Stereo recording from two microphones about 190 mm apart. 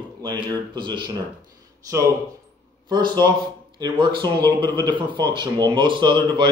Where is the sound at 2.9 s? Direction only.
25° right (ahead or behind).